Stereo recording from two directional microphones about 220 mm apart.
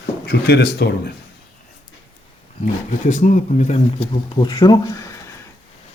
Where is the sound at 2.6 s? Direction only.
35° left (ahead or behind).